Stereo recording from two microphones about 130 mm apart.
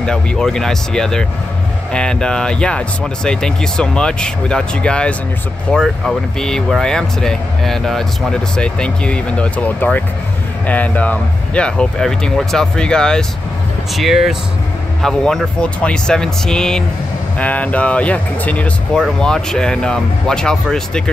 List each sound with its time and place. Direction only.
0.0 s speech: 5° left (ahead or behind)